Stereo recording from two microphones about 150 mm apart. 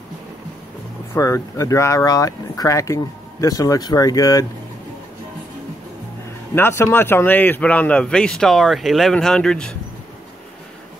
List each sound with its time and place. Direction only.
1.1 s speech: 20° left (ahead or behind)
6.5 s speech: 15° left (ahead or behind)